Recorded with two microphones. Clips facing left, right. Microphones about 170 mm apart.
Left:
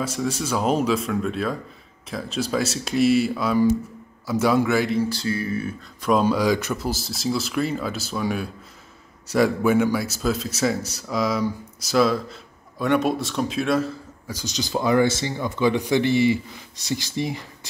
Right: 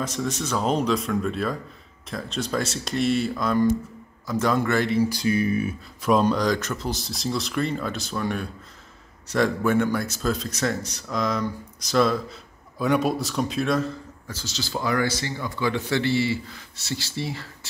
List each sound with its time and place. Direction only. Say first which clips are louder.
0.0 s a man's voice: left 2 dB; 10° left (ahead or behind)
5.1 s speech: right 3 dB; 15° right (ahead or behind)
6.0 s a man's voice: left 1 dB; centre (ahead or behind)